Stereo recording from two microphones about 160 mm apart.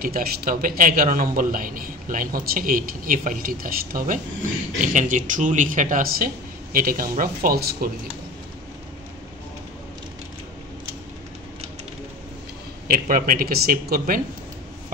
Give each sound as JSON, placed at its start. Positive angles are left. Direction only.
{"t": 0.0, "sound": "a man's voice", "side_deg": -65}
{"t": 12.8, "sound": "a man's voice", "side_deg": -65}